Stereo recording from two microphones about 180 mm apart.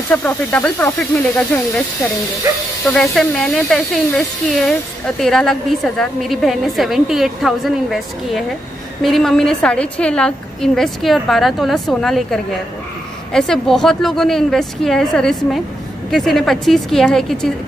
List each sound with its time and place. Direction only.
0.1 s speech: 10° left (ahead or behind)
2.4 s speech: 20° right (ahead or behind)
2.9 s a woman's voice: centre (ahead or behind)